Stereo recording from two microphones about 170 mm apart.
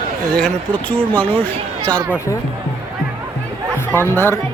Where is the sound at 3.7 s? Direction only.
15° left (ahead or behind).